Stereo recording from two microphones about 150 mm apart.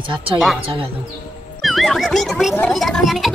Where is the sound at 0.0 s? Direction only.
35° right (ahead or behind).